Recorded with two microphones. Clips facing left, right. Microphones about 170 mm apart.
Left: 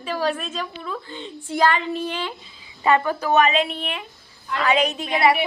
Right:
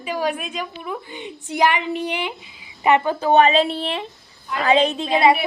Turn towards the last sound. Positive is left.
turn(degrees=-25)  # may be behind; listen again after turning